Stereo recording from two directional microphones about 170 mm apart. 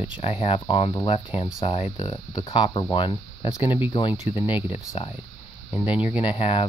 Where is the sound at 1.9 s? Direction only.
25° left (ahead or behind).